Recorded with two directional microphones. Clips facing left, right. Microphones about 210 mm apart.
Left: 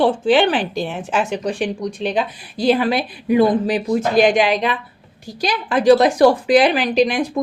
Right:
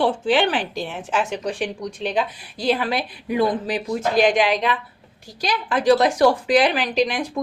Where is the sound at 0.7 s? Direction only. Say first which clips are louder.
Left 5 dB; 65° left (ahead or behind).